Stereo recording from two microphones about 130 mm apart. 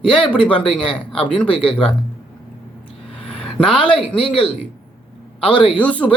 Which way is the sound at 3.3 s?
5° left (ahead or behind).